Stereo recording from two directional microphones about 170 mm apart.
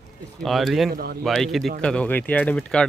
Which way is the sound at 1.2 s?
Centre (ahead or behind).